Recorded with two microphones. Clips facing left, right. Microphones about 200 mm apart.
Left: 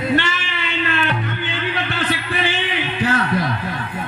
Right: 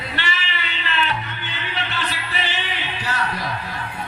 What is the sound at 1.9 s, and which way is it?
Music, 55° left (ahead or behind).